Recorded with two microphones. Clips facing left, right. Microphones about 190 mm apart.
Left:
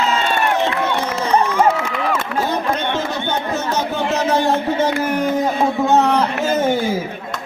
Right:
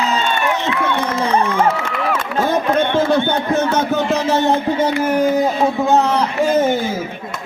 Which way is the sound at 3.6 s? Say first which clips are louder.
Right 4 dB; 55° right (ahead or behind).